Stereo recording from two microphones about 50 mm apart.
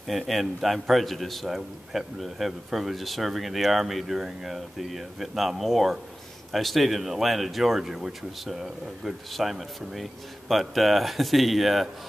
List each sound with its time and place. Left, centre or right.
0.1 s a man's voice: centre